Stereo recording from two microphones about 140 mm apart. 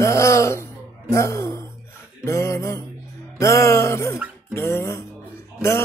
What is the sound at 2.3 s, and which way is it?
Music, 20° left (ahead or behind).